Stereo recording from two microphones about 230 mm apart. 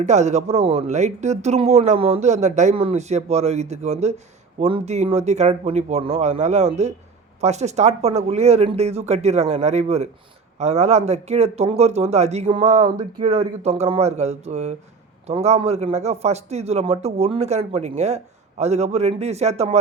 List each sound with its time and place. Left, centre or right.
0.0 s a man's voice: right